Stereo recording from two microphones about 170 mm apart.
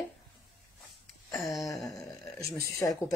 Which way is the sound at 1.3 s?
20° left (ahead or behind).